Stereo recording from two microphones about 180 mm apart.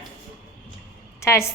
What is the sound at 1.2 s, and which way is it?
Speech, 15° left (ahead or behind).